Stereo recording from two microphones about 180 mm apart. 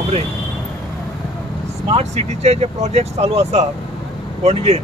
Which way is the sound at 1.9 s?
35° right (ahead or behind).